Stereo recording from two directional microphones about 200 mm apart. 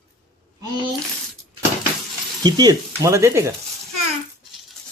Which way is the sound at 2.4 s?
20° right (ahead or behind).